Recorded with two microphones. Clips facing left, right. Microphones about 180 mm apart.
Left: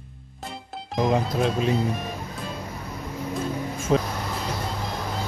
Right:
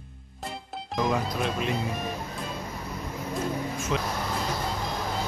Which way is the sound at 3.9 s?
40° left (ahead or behind).